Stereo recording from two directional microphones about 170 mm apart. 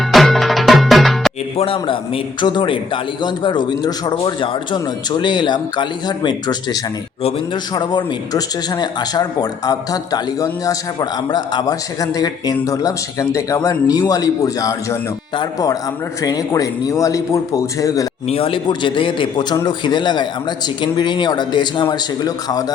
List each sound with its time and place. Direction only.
0.0 s music: centre (ahead or behind)
1.5 s a man's voice: 30° left (ahead or behind)
18.3 s a man's voice: 35° left (ahead or behind)